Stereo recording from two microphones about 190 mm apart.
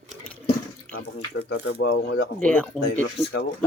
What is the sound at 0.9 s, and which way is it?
Speech, 65° left (ahead or behind).